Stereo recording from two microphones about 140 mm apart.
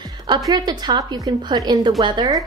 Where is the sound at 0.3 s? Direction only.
30° right (ahead or behind).